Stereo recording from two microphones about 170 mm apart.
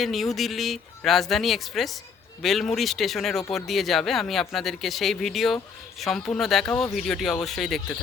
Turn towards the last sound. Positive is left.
turn(degrees=0)  # may be behind; listen again after turning